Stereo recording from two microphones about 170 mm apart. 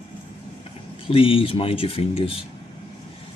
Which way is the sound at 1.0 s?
35° left (ahead or behind).